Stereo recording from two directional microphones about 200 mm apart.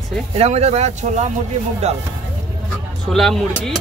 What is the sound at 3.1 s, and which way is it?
Speech, centre (ahead or behind).